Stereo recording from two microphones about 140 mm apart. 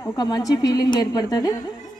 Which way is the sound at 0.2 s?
25° left (ahead or behind).